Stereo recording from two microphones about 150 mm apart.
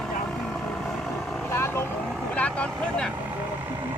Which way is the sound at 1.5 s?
15° left (ahead or behind).